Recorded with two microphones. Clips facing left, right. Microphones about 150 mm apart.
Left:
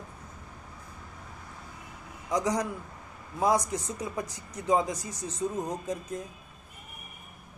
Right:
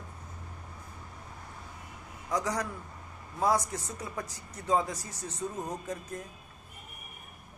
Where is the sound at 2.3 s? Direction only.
20° left (ahead or behind).